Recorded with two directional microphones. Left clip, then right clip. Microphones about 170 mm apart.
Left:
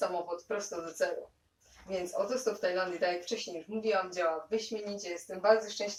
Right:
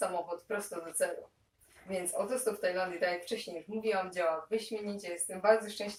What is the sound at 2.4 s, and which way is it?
Speech, 15° right (ahead or behind).